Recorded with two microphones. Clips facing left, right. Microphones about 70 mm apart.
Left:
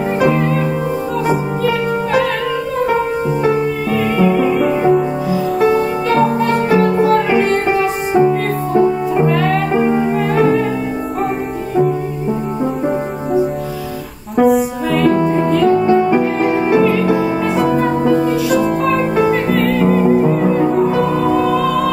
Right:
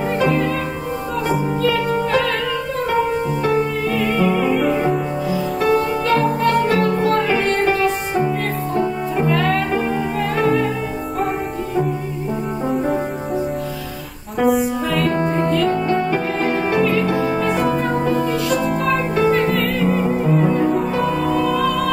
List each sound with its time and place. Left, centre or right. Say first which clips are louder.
0.2 s music: left 4 dB; centre
4.2 s music: left 4 dB; centre
5.7 s music: left 2 dB; centre
9.3 s music: left 3 dB; centre
9.7 s music: left 6 dB; left
14.3 s music: left 4 dB; centre
18.1 s music: left 5 dB; centre